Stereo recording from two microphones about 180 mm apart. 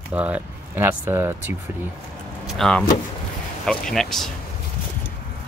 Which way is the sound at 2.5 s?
Centre (ahead or behind).